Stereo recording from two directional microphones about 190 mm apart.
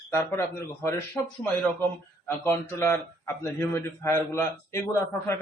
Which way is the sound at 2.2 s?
15° left (ahead or behind).